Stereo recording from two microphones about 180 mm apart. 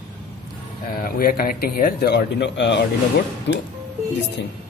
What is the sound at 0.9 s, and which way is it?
A man's voice, 55° left (ahead or behind).